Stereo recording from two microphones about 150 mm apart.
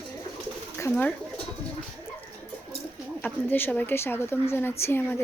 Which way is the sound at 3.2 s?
15° left (ahead or behind).